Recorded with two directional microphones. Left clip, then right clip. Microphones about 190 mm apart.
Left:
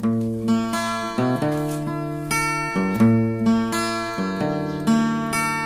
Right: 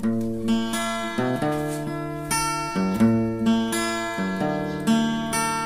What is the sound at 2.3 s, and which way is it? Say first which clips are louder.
Music: left 3 dB; 20° left (ahead or behind).